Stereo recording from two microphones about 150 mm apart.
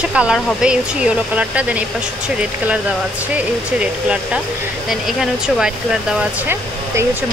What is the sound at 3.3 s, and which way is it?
Speech, 10° right (ahead or behind).